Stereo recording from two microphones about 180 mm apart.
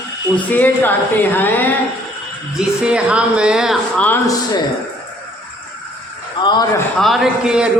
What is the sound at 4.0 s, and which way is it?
Speech, 10° left (ahead or behind).